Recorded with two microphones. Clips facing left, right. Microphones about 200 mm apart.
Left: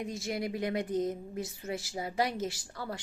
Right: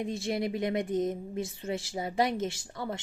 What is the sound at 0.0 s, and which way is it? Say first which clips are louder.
A woman's voice: right 4 dB; 25° right (ahead or behind).